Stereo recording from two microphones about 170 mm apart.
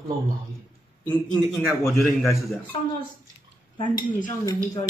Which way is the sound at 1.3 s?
Centre (ahead or behind).